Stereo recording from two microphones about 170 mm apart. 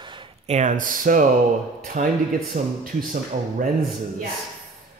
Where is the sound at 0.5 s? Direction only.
45° right (ahead or behind).